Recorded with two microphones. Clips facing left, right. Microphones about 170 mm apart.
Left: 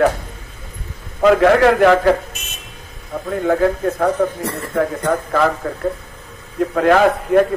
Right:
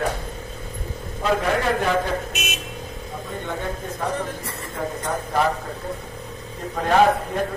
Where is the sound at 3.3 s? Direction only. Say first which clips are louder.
Left 14 dB; 90° left.